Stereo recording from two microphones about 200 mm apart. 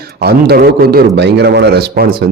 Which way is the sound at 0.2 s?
55° right (ahead or behind).